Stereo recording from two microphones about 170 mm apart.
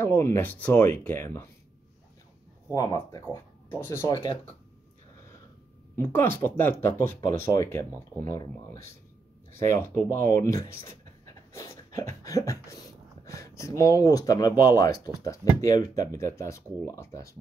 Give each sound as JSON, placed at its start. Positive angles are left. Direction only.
{"t": 0.0, "sound": "speech", "side_deg": 15}
{"t": 2.7, "sound": "speech", "side_deg": 20}
{"t": 4.1, "sound": "speech", "side_deg": 30}
{"t": 5.9, "sound": "speech", "side_deg": 15}
{"t": 11.2, "sound": "a sound", "side_deg": 20}
{"t": 13.2, "sound": "speech", "side_deg": 20}